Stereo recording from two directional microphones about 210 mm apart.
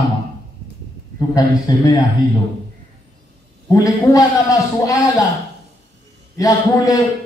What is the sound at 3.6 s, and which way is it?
A man's voice, 15° left (ahead or behind).